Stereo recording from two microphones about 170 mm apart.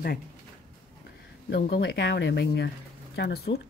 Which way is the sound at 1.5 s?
80° left.